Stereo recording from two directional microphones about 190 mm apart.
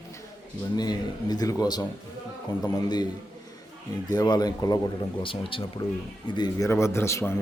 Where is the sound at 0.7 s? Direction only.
20° left (ahead or behind).